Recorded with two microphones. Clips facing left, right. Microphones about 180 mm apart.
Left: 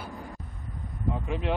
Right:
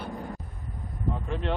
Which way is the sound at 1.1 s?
5° left (ahead or behind).